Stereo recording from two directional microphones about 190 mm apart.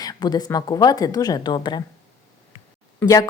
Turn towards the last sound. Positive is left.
turn(degrees=15)  # may be behind; listen again after turning